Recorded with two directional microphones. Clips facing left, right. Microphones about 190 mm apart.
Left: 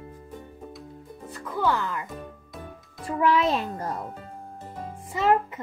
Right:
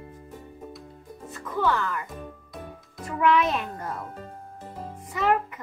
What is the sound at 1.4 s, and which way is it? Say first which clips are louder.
Speech: even; 10° left (ahead or behind).